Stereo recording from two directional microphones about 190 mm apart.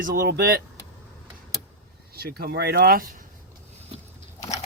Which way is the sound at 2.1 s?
55° right (ahead or behind).